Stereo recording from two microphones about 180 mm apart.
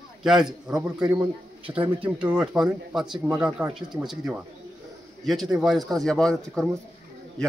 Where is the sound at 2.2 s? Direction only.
5° right (ahead or behind).